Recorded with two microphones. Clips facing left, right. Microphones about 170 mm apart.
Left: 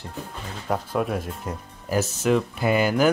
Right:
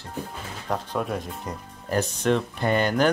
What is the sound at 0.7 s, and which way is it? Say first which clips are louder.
Speech: left 3 dB; 5° left (ahead or behind).